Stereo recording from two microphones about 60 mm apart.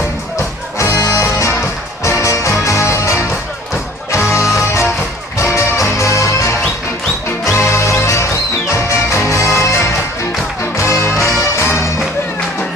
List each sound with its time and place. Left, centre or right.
0.7 s music: left